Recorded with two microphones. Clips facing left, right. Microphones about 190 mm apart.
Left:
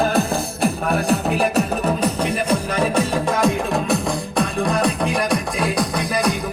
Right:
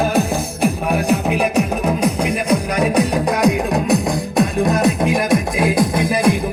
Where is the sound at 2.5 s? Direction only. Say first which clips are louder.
Right 3 dB; 15° right (ahead or behind).